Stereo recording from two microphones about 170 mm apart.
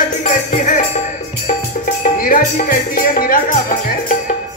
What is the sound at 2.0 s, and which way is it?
Music, 55° left (ahead or behind).